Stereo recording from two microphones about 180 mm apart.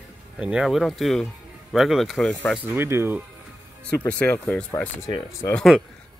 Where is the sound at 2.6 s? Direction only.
10° right (ahead or behind).